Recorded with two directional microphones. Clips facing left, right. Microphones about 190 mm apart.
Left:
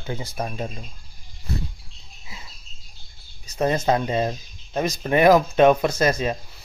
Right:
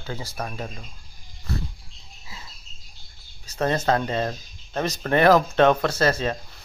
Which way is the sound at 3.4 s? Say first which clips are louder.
Left 2 dB; 10° left (ahead or behind).